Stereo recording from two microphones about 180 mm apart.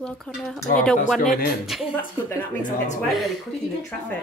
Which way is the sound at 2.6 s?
40° left (ahead or behind).